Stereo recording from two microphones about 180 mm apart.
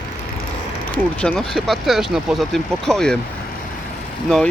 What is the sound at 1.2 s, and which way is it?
Speech, 5° left (ahead or behind).